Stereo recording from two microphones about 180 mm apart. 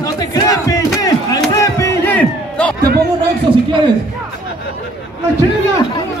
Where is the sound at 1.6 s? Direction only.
15° left (ahead or behind).